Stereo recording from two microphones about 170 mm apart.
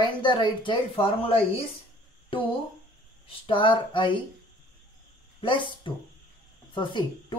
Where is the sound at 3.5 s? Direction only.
30° left (ahead or behind).